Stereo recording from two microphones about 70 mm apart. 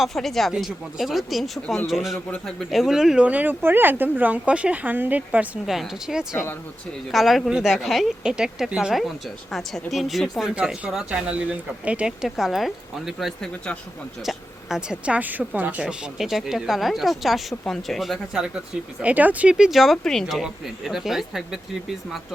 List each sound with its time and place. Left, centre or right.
0.0 s speech: centre
3.2 s speech: centre
5.6 s speech: centre
10.9 s speech: centre
15.8 s speech: centre
18.3 s speech: centre
19.0 s speech: right
19.5 s speech: centre